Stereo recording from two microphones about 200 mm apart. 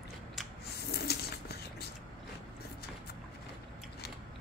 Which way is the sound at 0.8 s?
50° left (ahead or behind).